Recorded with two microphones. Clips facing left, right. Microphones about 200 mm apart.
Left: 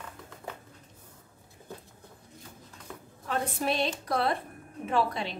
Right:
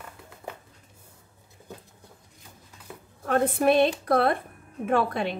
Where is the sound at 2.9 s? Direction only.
10° right (ahead or behind).